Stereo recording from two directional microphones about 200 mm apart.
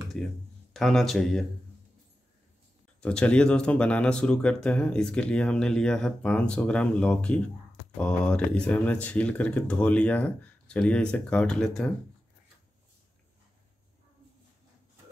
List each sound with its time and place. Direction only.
0.2 s speech: centre (ahead or behind)
3.0 s speech: 5° left (ahead or behind)